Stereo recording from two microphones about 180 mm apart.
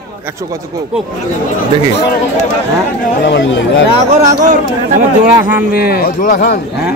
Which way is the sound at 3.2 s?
80° left.